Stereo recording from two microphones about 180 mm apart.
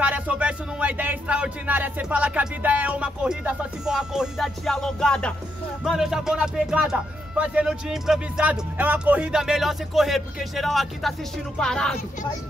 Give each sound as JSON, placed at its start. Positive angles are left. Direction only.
{"t": 0.0, "sound": "speech", "side_deg": -10}